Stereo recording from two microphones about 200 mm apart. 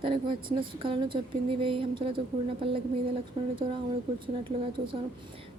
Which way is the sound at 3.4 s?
25° right (ahead or behind).